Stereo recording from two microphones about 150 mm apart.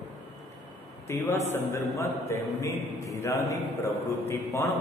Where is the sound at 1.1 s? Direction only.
20° left (ahead or behind).